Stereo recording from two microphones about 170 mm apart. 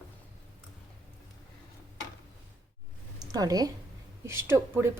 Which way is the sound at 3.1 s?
20° right (ahead or behind).